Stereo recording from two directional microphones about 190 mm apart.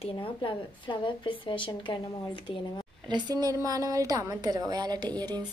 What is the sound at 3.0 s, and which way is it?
A woman's voice, 20° right (ahead or behind).